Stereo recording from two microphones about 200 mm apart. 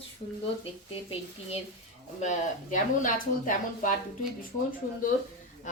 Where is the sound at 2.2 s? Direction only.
40° left (ahead or behind).